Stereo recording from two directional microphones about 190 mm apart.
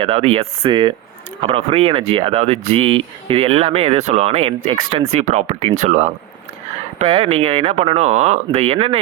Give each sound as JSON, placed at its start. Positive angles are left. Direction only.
{"t": 0.0, "sound": "speech", "side_deg": -35}